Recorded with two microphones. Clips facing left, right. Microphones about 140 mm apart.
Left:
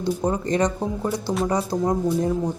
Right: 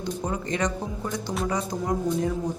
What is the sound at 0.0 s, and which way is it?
Speech, 35° left (ahead or behind).